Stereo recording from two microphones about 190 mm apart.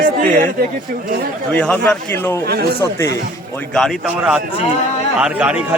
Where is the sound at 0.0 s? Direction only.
45° right (ahead or behind).